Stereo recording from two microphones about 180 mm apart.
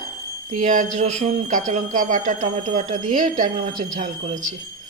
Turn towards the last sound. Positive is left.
turn(degrees=-40)  # may be behind; listen again after turning